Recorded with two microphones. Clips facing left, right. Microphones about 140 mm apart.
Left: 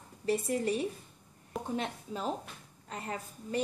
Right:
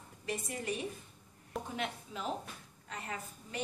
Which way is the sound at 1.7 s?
35° left (ahead or behind).